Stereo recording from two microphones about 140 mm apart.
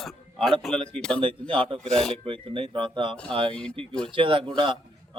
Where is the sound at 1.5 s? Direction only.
40° right (ahead or behind).